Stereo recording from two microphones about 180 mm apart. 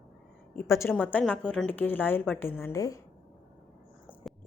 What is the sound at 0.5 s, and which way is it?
A woman's voice, 15° left (ahead or behind).